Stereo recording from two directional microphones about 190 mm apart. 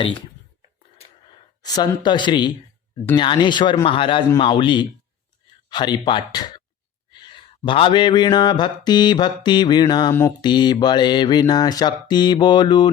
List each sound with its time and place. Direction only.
1.6 s speech: 20° left (ahead or behind)
2.0 s mantra: 25° left (ahead or behind)
5.6 s speech: 25° left (ahead or behind)
6.1 s mantra: 20° left (ahead or behind)